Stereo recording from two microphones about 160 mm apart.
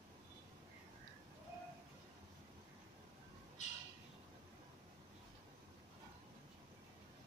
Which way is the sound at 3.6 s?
45° left (ahead or behind).